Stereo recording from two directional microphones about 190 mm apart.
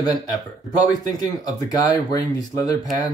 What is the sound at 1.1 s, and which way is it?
Speech, 20° left (ahead or behind).